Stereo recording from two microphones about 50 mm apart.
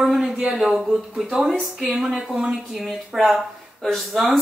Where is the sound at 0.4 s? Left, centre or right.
Centre.